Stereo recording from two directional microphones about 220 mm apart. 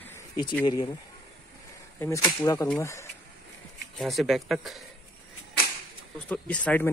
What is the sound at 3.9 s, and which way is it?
Speech, centre (ahead or behind).